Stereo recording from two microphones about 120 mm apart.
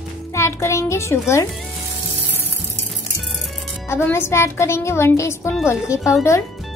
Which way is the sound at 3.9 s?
20° left (ahead or behind).